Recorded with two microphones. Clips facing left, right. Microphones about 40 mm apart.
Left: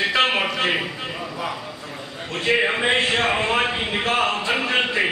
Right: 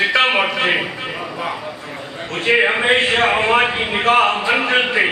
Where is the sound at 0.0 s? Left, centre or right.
Centre.